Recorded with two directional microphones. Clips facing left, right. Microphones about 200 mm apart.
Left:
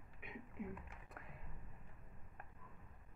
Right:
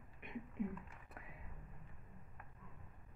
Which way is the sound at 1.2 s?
Centre (ahead or behind).